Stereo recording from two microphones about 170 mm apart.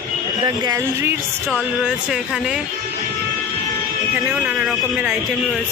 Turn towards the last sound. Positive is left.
turn(degrees=-5)  # may be behind; listen again after turning